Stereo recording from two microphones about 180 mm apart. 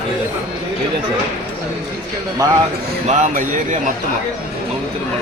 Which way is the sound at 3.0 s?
40° right (ahead or behind).